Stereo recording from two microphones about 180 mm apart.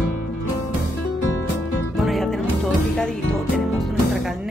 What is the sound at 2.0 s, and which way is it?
Music, centre (ahead or behind).